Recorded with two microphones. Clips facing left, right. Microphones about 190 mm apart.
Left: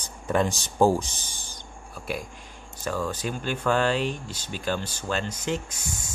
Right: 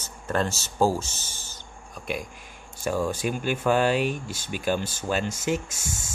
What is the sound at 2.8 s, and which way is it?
Speech, 10° right (ahead or behind).